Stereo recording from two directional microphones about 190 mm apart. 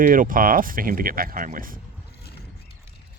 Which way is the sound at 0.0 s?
45° right (ahead or behind).